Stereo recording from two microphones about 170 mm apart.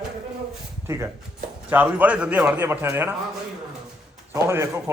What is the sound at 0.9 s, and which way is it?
A man's voice, 15° right (ahead or behind).